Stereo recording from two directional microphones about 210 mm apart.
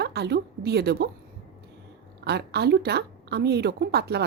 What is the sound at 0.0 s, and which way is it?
A woman's voice, 50° right (ahead or behind).